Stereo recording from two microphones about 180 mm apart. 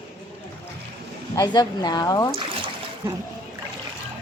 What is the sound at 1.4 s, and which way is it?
Speech, 20° left (ahead or behind).